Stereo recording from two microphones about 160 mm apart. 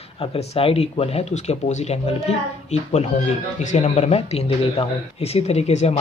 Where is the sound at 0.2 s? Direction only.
35° left (ahead or behind).